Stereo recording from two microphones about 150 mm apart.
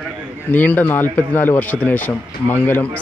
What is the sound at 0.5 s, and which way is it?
A man's voice, 10° left (ahead or behind).